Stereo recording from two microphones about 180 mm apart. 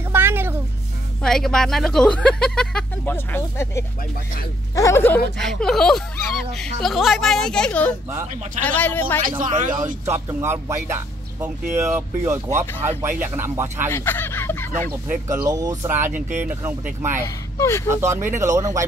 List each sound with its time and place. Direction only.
0.1 s a sound: 10° right (ahead or behind)
1.2 s speech: 5° left (ahead or behind)
9.4 s speech: 45° right (ahead or behind)
10.0 s speech: 15° right (ahead or behind)
13.9 s a sound: 10° left (ahead or behind)
15.0 s speech: 20° right (ahead or behind)
17.6 s speech: 15° left (ahead or behind)
17.8 s speech: 15° right (ahead or behind)